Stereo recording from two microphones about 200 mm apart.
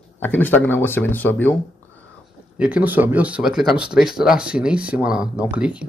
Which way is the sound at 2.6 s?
5° right (ahead or behind).